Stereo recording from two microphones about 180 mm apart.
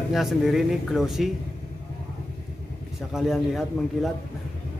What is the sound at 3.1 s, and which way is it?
Speech, centre (ahead or behind).